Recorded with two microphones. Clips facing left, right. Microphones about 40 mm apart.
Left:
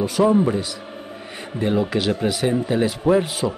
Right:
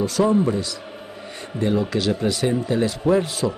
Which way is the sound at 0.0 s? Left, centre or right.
Centre.